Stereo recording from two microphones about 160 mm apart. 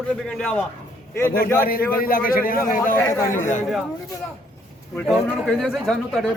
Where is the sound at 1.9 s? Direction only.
65° left (ahead or behind).